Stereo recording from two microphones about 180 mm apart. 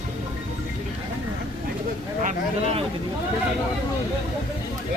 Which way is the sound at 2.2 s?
35° right (ahead or behind).